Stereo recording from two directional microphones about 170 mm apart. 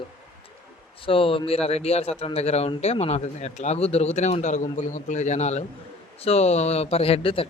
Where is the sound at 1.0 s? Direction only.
30° left (ahead or behind).